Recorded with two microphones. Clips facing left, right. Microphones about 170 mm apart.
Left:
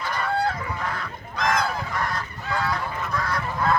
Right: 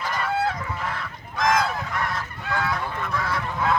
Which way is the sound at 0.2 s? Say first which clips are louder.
Left 1 dB; centre (ahead or behind).